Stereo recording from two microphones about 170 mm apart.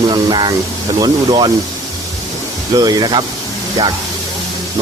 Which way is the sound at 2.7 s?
25° right (ahead or behind).